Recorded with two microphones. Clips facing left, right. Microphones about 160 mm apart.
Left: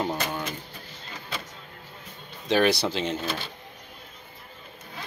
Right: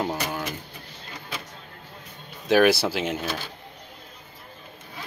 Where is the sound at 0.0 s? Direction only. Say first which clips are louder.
Right 1 dB; 5° right (ahead or behind).